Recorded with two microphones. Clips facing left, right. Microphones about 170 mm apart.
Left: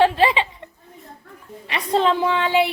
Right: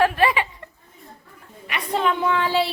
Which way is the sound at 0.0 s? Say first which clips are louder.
Left 2 dB; 25° left (ahead or behind).